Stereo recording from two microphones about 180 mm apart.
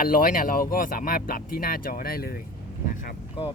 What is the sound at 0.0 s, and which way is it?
Speech, 50° left (ahead or behind).